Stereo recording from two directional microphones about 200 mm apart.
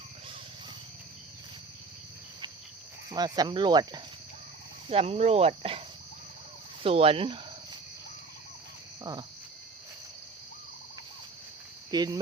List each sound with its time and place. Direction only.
3.1 s speech: 20° right (ahead or behind)
6.8 s speech: 30° right (ahead or behind)
9.1 s speech: 20° right (ahead or behind)
11.9 s speech: 20° right (ahead or behind)